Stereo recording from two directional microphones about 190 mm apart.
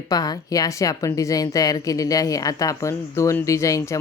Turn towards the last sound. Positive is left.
turn(degrees=15)  # may be behind; listen again after turning